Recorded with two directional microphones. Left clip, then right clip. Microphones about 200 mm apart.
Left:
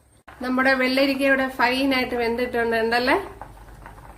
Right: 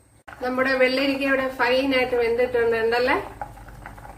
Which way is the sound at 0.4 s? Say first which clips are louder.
Even; 50° left (ahead or behind).